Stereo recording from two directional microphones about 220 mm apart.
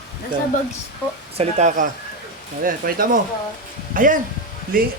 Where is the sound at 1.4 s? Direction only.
30° right (ahead or behind).